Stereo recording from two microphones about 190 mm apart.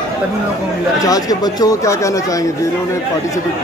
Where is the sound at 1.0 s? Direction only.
20° left (ahead or behind).